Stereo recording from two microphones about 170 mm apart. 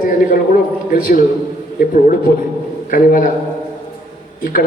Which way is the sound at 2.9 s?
55° left (ahead or behind).